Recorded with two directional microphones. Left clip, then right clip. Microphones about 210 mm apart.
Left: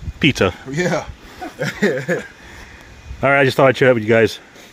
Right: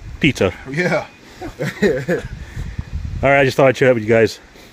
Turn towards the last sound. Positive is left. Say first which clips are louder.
# even
turn(degrees=0)  # may be behind; listen again after turning